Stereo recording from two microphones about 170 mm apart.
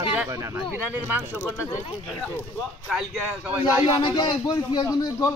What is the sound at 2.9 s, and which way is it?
Speech, 5° right (ahead or behind).